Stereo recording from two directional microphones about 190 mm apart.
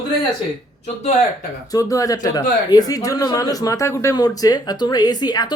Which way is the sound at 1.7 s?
20° left (ahead or behind).